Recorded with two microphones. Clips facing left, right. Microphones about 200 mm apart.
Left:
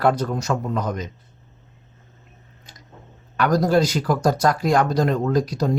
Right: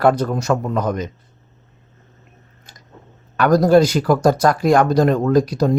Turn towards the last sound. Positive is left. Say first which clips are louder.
# right 5 dB
turn(degrees=-55)  # may be behind; listen again after turning